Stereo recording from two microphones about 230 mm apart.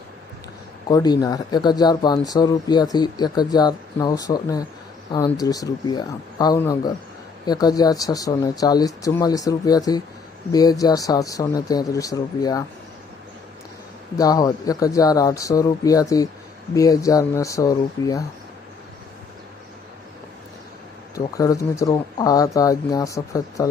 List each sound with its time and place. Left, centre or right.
0.9 s speech: centre
14.2 s speech: centre
21.3 s speech: centre